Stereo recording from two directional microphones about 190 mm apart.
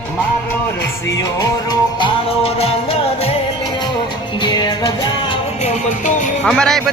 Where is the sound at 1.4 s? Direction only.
20° left (ahead or behind).